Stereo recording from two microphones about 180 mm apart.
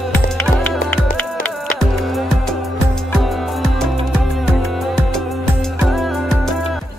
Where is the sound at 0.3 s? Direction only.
Centre (ahead or behind).